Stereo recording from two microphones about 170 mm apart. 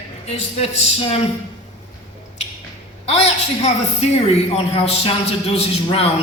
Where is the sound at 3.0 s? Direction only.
40° left (ahead or behind).